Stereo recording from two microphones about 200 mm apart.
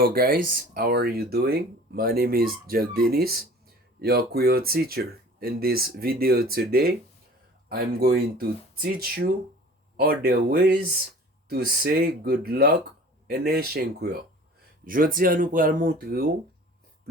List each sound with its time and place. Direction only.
0.0 s speech: 45° right (ahead or behind)